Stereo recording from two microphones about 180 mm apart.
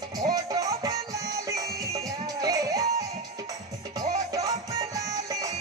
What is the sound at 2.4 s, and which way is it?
Music, 20° right (ahead or behind).